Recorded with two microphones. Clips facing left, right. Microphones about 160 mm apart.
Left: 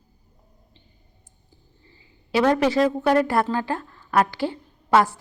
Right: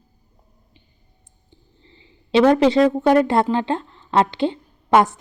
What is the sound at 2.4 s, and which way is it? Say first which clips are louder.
A woman's voice: right 5 dB; 20° right (ahead or behind).